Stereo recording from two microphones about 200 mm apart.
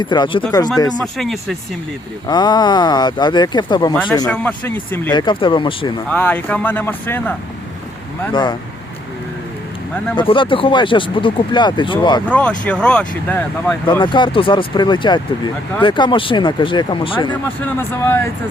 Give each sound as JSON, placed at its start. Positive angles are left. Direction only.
{"t": 0.0, "sound": "speech", "side_deg": 25}
{"t": 0.9, "sound": "speech", "side_deg": 0}
{"t": 2.2, "sound": "speech", "side_deg": 20}
{"t": 5.1, "sound": "speech", "side_deg": 25}
{"t": 6.1, "sound": "speech", "side_deg": 5}
{"t": 8.3, "sound": "speech", "side_deg": 20}
{"t": 10.2, "sound": "speech", "side_deg": 25}
{"t": 12.3, "sound": "speech", "side_deg": 5}
{"t": 14.0, "sound": "speech", "side_deg": 25}
{"t": 17.7, "sound": "speech", "side_deg": 10}